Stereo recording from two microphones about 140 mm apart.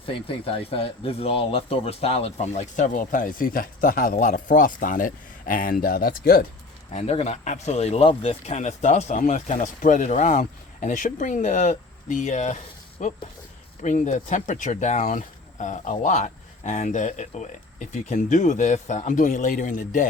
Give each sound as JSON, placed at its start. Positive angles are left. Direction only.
{"t": 0.0, "sound": "speech", "side_deg": 40}
{"t": 6.9, "sound": "speech", "side_deg": 50}